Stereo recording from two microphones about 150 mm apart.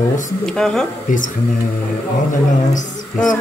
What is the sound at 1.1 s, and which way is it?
Speech, 60° left (ahead or behind).